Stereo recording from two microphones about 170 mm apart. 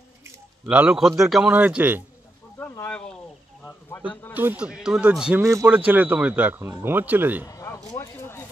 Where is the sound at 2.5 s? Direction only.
10° left (ahead or behind).